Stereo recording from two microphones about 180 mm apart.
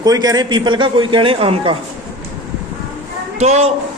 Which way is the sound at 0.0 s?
20° right (ahead or behind).